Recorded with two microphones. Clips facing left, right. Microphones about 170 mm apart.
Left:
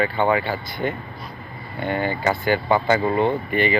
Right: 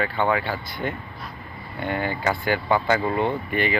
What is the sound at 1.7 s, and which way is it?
Speech, 5° right (ahead or behind).